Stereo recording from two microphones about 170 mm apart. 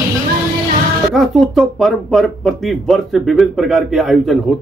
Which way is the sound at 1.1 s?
Centre (ahead or behind).